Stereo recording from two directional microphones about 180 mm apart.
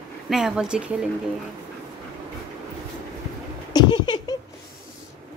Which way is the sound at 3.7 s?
25° left (ahead or behind).